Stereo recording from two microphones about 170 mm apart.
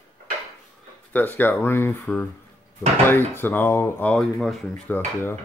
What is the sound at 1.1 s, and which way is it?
Speech, 10° left (ahead or behind).